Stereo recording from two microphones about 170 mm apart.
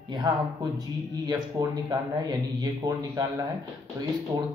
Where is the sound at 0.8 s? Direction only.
20° right (ahead or behind).